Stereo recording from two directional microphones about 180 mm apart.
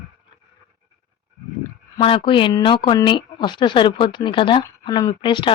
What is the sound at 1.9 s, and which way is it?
A woman's voice, 30° left (ahead or behind).